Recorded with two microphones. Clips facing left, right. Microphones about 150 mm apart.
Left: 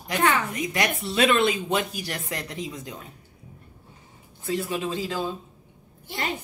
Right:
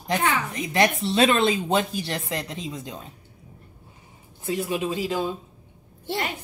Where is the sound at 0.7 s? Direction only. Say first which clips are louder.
Right 10 dB; 30° right (ahead or behind).